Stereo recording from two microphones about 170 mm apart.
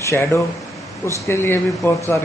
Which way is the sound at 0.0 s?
15° left (ahead or behind).